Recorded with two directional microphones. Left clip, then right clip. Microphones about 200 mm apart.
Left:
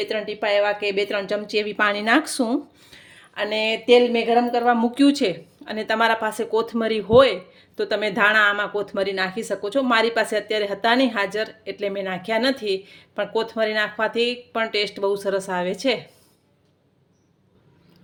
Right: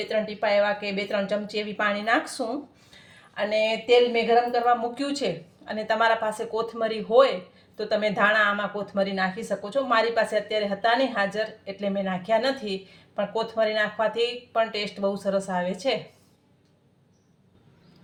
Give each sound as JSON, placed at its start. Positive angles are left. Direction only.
{"t": 0.0, "sound": "speech", "side_deg": 45}